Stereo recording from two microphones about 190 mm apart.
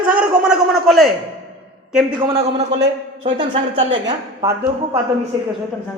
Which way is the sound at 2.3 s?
30° right (ahead or behind).